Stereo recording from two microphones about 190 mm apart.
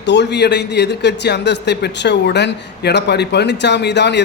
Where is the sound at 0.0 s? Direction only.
65° left (ahead or behind).